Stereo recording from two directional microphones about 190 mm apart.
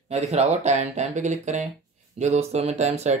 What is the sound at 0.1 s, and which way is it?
Speech, 35° right (ahead or behind).